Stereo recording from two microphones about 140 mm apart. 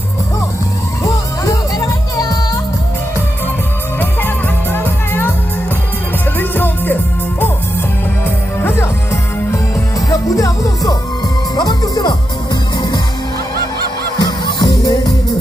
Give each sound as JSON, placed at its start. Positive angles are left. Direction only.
{"t": 4.7, "sound": "music", "side_deg": 15}
{"t": 6.4, "sound": "music", "side_deg": 15}
{"t": 8.6, "sound": "music", "side_deg": 15}
{"t": 10.1, "sound": "music", "side_deg": 25}
{"t": 14.2, "sound": "music", "side_deg": 30}